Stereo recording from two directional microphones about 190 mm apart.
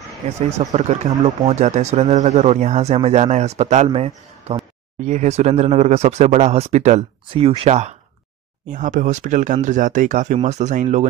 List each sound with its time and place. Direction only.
0.4 s speech: 35° right (ahead or behind)